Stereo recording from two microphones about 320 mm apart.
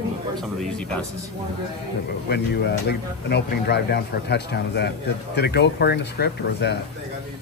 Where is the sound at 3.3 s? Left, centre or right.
Left.